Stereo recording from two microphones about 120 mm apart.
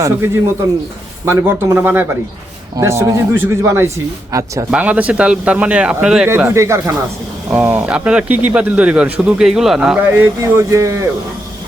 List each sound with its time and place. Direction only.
1.2 s speech: 20° right (ahead or behind)
4.7 s speech: 10° right (ahead or behind)
6.2 s speech: 20° right (ahead or behind)
7.5 s speech: 10° right (ahead or behind)
10.1 s speech: 20° right (ahead or behind)